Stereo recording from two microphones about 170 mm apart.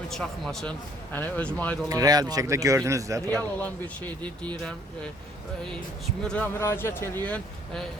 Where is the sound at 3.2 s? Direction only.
10° left (ahead or behind).